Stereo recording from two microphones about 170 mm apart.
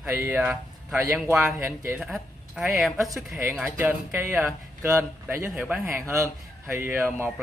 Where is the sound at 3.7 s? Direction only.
10° right (ahead or behind).